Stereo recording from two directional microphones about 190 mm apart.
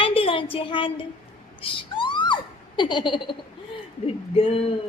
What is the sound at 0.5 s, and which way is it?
A woman's voice, 25° left (ahead or behind).